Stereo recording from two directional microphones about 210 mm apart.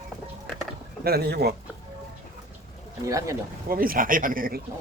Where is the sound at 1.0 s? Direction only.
50° right (ahead or behind).